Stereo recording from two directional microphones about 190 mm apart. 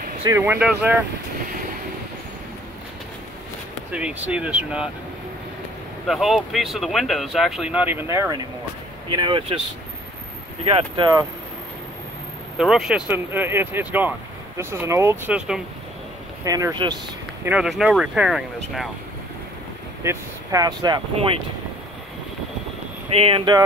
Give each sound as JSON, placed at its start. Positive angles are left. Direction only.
{"t": 0.2, "sound": "speech", "side_deg": -15}
{"t": 3.9, "sound": "speech", "side_deg": -5}
{"t": 6.0, "sound": "speech", "side_deg": 0}
{"t": 9.1, "sound": "speech", "side_deg": -25}
{"t": 10.6, "sound": "speech", "side_deg": -30}
{"t": 12.5, "sound": "speech", "side_deg": 0}
{"t": 16.4, "sound": "speech", "side_deg": -20}
{"t": 17.5, "sound": "speech", "side_deg": -5}
{"t": 20.0, "sound": "speech", "side_deg": -15}
{"t": 23.1, "sound": "speech", "side_deg": -30}